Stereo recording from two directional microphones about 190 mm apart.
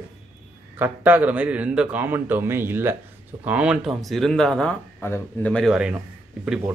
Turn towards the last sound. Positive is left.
turn(degrees=-5)  # may be behind; listen again after turning